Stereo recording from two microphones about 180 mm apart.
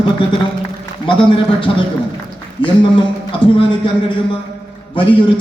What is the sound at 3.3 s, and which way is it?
Speech, 30° left (ahead or behind).